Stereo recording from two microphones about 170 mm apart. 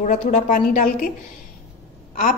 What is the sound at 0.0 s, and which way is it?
A woman's voice, 50° left (ahead or behind).